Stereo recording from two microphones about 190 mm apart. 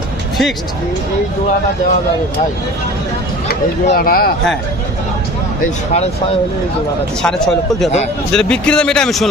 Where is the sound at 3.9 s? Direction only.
55° left (ahead or behind).